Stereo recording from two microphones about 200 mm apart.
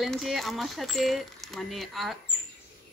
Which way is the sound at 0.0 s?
Centre (ahead or behind).